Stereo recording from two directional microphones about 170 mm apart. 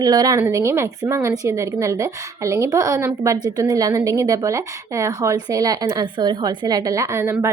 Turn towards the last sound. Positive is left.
turn(degrees=-15)  # may be behind; listen again after turning